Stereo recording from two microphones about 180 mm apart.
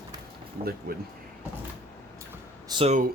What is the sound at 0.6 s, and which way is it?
Speech, 50° right (ahead or behind).